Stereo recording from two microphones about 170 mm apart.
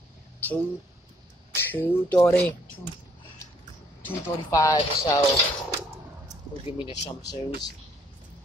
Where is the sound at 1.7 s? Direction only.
10° left (ahead or behind).